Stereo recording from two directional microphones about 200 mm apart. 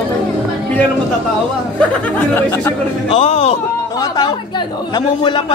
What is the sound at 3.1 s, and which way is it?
Speech, 30° left (ahead or behind).